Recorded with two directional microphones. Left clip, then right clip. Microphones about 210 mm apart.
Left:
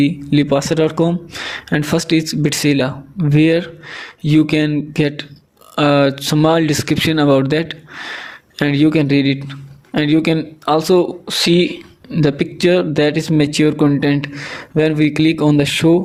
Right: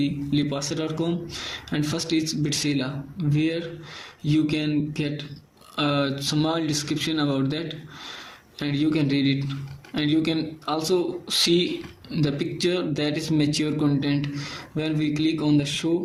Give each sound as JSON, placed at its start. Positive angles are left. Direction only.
{"t": 0.0, "sound": "speech", "side_deg": 45}